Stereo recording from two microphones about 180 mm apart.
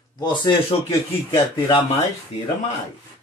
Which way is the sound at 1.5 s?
25° left (ahead or behind).